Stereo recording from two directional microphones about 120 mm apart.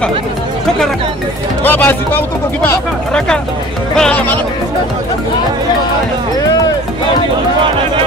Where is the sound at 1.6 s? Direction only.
15° left (ahead or behind).